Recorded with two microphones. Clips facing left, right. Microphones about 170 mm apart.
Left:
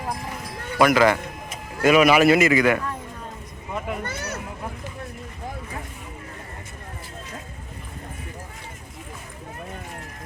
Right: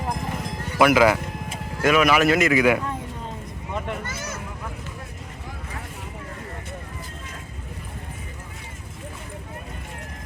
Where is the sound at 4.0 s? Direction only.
65° left (ahead or behind).